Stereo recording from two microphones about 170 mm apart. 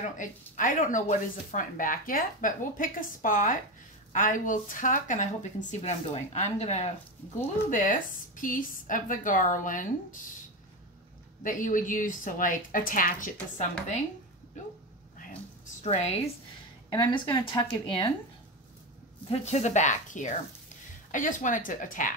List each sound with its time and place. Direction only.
0.6 s speech: 50° left (ahead or behind)
11.4 s speech: 50° left (ahead or behind)
15.8 s a woman's voice: 40° left (ahead or behind)
16.9 s speech: 25° left (ahead or behind)
19.4 s speech: 45° left (ahead or behind)